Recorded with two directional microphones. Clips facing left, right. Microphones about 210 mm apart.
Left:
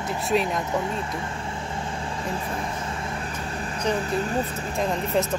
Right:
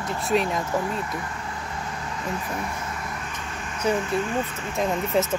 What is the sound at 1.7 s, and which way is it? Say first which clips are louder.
Vehicle: left 2 dB; 30° left (ahead or behind).